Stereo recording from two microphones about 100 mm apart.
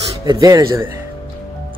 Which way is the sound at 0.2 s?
35° right (ahead or behind).